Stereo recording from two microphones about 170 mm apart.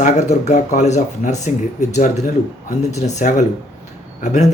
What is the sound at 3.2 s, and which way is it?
A man's voice, 45° left (ahead or behind).